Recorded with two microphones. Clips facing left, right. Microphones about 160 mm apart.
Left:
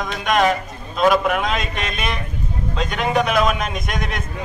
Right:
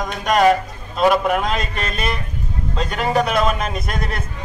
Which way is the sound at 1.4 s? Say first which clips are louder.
Even; 35° right (ahead or behind).